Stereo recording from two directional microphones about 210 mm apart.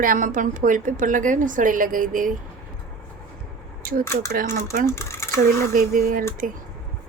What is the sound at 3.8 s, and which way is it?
Speech, 45° right (ahead or behind).